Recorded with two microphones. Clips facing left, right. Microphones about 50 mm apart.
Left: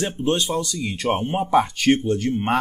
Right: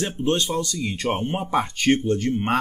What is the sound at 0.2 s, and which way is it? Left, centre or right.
Speech, centre.